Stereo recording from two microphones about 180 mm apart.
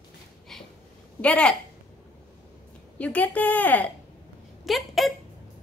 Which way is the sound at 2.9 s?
10° left (ahead or behind).